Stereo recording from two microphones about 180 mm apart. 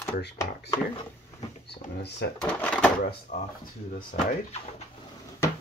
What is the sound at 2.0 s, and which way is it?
Speech, 70° left (ahead or behind).